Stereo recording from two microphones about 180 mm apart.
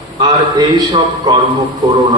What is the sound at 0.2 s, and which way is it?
A man's voice, 20° right (ahead or behind).